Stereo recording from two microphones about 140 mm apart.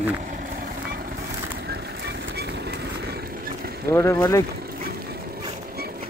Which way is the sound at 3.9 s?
20° left (ahead or behind).